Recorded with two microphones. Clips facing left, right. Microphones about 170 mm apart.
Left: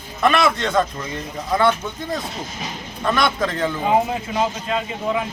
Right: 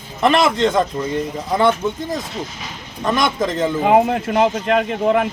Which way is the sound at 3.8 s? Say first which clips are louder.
Right 5 dB; 65° right (ahead or behind).